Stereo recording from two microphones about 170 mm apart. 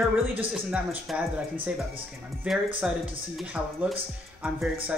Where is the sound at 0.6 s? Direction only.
5° right (ahead or behind).